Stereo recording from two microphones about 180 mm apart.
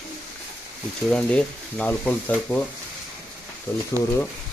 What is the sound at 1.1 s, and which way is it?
Frying, 5° left (ahead or behind).